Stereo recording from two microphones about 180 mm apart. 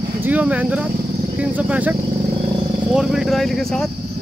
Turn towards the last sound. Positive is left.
turn(degrees=5)  # may be behind; listen again after turning